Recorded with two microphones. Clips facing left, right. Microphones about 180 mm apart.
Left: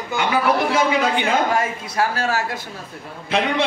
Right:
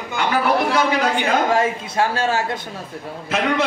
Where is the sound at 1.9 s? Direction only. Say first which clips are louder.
Right 1 dB; 25° right (ahead or behind).